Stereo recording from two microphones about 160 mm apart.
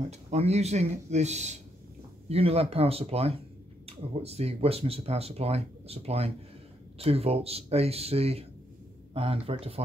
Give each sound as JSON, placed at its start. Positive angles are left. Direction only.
{"t": 0.1, "sound": "speech", "side_deg": -45}